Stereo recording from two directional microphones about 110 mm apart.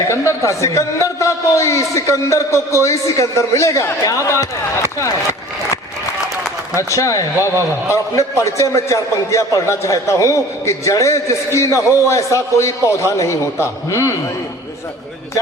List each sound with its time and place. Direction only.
0.1 s a man's voice: 25° left (ahead or behind)
6.7 s a man's voice: 30° left (ahead or behind)